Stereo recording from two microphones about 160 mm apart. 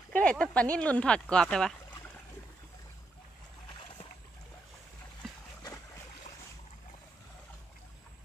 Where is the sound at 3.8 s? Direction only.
35° left (ahead or behind).